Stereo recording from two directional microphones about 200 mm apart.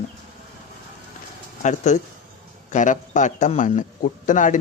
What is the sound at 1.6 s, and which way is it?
A man's voice, 35° left (ahead or behind).